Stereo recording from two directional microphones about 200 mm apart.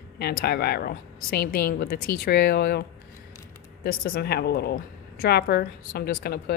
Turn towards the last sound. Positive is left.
turn(degrees=55)  # may be behind; listen again after turning